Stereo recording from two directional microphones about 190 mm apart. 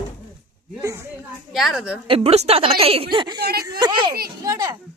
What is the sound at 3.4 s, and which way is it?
Speech, 55° right (ahead or behind).